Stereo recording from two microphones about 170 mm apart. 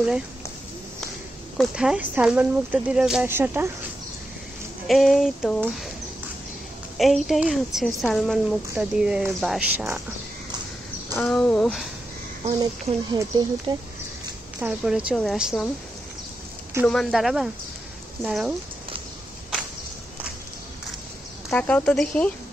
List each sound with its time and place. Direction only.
1.6 s a woman's voice: 5° right (ahead or behind)
4.8 s a woman's voice: centre (ahead or behind)
7.0 s a woman's voice: centre (ahead or behind)
11.1 s speech: 10° left (ahead or behind)
13.1 s speech: 25° right (ahead or behind)
14.6 s a woman's voice: 5° right (ahead or behind)
16.8 s a woman's voice: 5° left (ahead or behind)
21.5 s speech: 5° left (ahead or behind)